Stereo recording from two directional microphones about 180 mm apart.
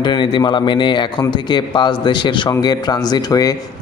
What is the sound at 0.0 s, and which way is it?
Speech, 25° left (ahead or behind).